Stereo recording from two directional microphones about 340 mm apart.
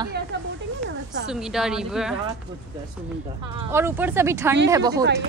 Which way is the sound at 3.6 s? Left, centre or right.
Centre.